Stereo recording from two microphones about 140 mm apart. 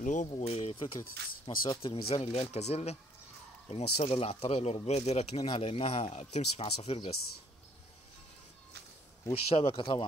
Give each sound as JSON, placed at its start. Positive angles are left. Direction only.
{"t": 0.0, "sound": "speech", "side_deg": 65}
{"t": 0.3, "sound": "speech", "side_deg": 45}
{"t": 9.2, "sound": "speech", "side_deg": 40}